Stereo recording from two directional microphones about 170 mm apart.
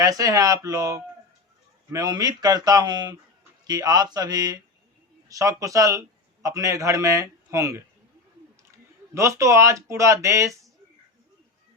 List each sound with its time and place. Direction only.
0.0 s a man's voice: 20° right (ahead or behind)
9.1 s a man's voice: 15° right (ahead or behind)